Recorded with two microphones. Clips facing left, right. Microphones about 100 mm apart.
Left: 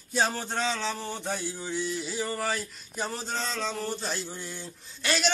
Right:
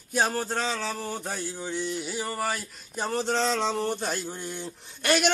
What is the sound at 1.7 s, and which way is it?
Speech, 60° right (ahead or behind).